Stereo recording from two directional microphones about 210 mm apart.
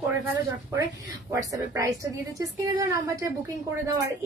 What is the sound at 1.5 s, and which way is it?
A woman's voice, 15° right (ahead or behind).